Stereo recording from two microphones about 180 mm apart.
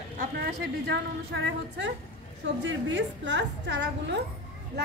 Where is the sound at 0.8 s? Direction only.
80° right.